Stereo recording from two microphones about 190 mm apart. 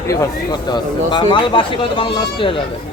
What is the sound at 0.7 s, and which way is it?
Speech, 25° left (ahead or behind).